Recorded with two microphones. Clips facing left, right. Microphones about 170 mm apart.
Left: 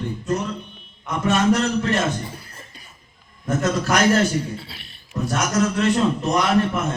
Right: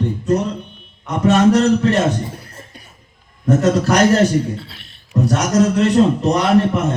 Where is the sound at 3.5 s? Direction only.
35° right (ahead or behind).